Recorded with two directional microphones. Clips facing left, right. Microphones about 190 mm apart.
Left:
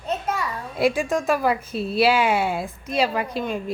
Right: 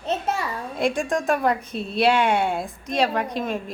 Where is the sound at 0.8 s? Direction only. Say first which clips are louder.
Left 2 dB; 5° left (ahead or behind).